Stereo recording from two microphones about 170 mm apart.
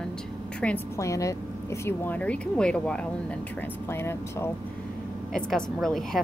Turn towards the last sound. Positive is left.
turn(degrees=0)  # may be behind; listen again after turning